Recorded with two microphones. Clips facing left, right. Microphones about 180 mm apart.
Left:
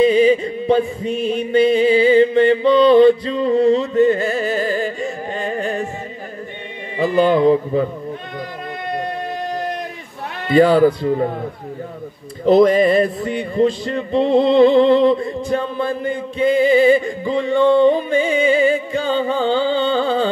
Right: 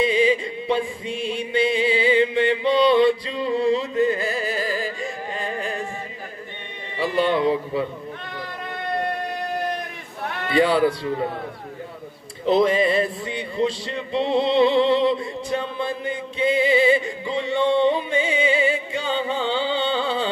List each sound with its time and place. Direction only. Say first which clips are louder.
0.0 s chant: left 7 dB; 45° left (ahead or behind)
5.0 s carnatic music: left 5 dB; 35° left (ahead or behind)
7.2 s chant: left 7 dB; 40° left (ahead or behind)
10.5 s music: left 7 dB; 45° left (ahead or behind)
12.4 s music: left 6 dB; 45° left (ahead or behind)